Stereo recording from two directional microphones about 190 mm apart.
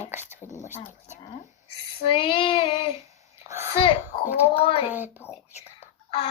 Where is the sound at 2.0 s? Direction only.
25° left (ahead or behind).